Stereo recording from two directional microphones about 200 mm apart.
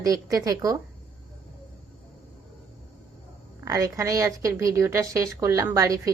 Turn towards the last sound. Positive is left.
turn(degrees=-15)  # may be behind; listen again after turning